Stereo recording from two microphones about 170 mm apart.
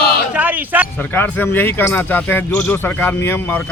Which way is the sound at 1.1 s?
10° left (ahead or behind).